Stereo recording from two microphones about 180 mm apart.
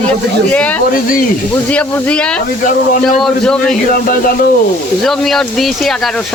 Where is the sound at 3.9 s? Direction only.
55° left (ahead or behind).